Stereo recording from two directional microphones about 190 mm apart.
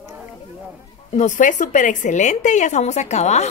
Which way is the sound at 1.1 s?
40° left (ahead or behind).